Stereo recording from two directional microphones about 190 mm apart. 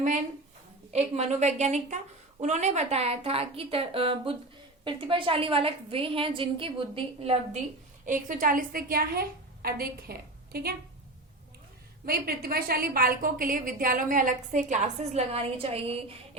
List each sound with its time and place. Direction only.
0.9 s a woman's voice: 35° right (ahead or behind)
8.0 s a woman's voice: 45° right (ahead or behind)
12.0 s a woman's voice: 55° right (ahead or behind); by 16.4 s 30° right (ahead or behind)